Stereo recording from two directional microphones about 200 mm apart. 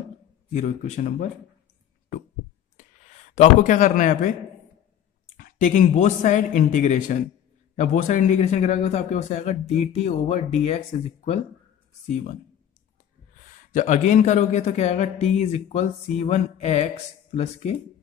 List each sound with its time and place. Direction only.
0.5 s speech: 35° left (ahead or behind)
3.3 s speech: 40° left (ahead or behind)
5.4 s speech: 40° left (ahead or behind)
13.7 s speech: 40° left (ahead or behind)